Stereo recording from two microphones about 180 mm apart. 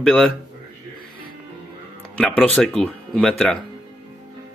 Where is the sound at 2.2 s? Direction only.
Centre (ahead or behind).